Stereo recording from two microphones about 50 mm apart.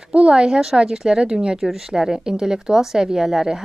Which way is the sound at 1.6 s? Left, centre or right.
Centre.